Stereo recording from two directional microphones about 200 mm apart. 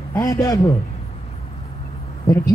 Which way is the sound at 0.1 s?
15° left (ahead or behind).